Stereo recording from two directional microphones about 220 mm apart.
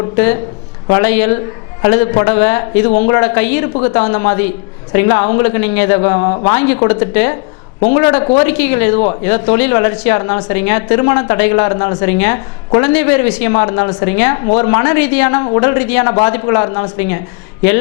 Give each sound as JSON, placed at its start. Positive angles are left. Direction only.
{"t": 0.9, "sound": "a woman's voice", "side_deg": 15}
{"t": 3.8, "sound": "speech", "side_deg": 25}
{"t": 5.5, "sound": "a woman's voice", "side_deg": 10}